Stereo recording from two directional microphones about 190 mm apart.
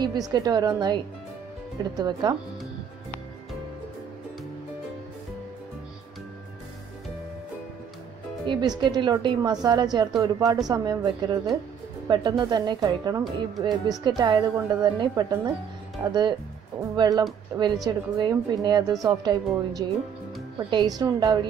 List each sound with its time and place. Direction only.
0.0 s a woman's voice: 20° right (ahead or behind)
2.0 s a woman's voice: 20° right (ahead or behind)
8.5 s a woman's voice: 25° right (ahead or behind)